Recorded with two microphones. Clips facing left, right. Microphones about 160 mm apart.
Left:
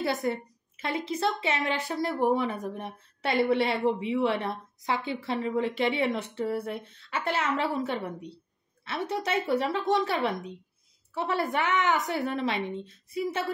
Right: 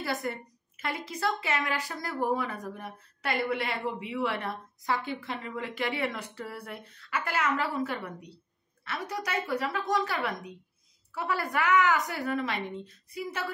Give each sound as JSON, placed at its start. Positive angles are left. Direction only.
{"t": 0.0, "sound": "a woman's voice", "side_deg": 25}